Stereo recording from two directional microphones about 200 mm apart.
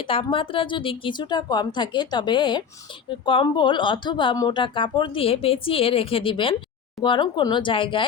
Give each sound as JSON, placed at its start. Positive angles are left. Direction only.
{"t": 0.0, "sound": "speech", "side_deg": 25}